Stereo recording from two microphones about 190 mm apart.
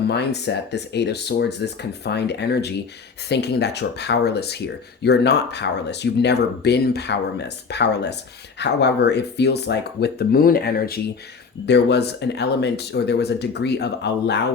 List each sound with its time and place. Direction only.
0.1 s speech: 65° left (ahead or behind)
11.6 s speech: 65° left (ahead or behind)